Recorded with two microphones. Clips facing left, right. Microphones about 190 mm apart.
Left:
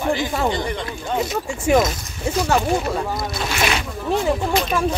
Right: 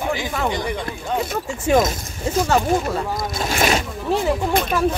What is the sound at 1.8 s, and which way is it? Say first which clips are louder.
Speech: even; 45° right (ahead or behind).